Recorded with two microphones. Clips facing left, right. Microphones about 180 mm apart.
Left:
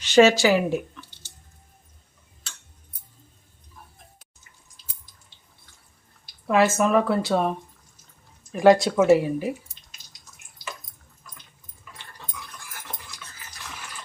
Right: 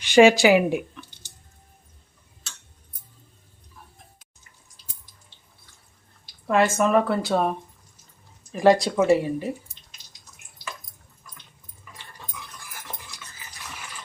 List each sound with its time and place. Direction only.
0.0 s a sound: 15° right (ahead or behind)
6.5 s speech: 5° left (ahead or behind)
8.5 s speech: centre (ahead or behind)